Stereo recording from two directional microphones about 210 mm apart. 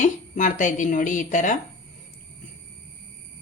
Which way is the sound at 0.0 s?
35° left (ahead or behind).